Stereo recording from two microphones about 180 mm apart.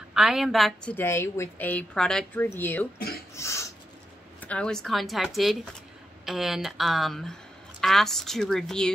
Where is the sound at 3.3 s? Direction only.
15° left (ahead or behind).